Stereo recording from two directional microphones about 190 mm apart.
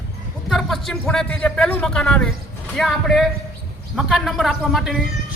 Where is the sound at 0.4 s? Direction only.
Centre (ahead or behind).